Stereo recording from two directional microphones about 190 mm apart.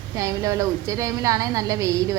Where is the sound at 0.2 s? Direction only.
15° right (ahead or behind).